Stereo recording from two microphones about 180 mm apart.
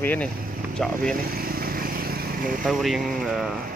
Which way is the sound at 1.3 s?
55° right (ahead or behind).